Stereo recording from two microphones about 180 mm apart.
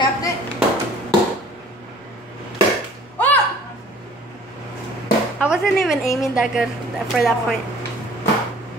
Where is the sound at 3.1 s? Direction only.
10° left (ahead or behind).